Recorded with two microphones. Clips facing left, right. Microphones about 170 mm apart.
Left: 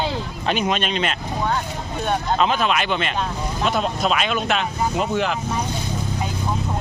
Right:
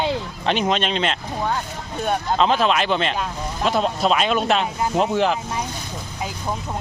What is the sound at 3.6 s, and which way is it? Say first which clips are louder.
Speech: right 2 dB; centre (ahead or behind).